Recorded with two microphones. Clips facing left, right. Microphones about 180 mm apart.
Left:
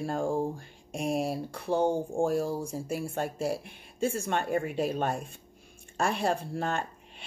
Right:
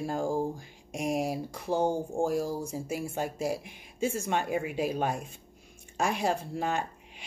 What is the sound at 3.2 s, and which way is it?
A woman's voice, 15° right (ahead or behind).